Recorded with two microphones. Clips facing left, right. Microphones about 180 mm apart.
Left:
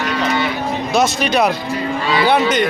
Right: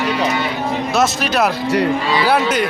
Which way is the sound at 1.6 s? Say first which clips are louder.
Right 6 dB; 75° right (ahead or behind).